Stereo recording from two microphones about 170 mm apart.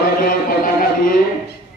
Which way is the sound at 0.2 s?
55° left (ahead or behind).